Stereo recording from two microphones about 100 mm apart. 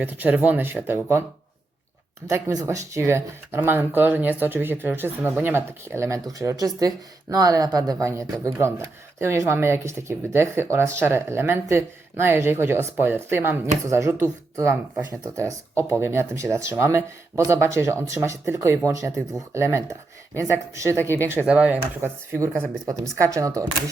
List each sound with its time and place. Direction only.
0.0 s speech: 15° right (ahead or behind)
2.2 s speech: 35° right (ahead or behind)
21.2 s speech: 20° right (ahead or behind)
22.9 s speech: 35° right (ahead or behind)